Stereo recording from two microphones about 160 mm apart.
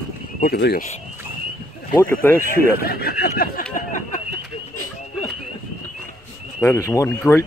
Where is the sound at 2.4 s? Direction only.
65° left (ahead or behind).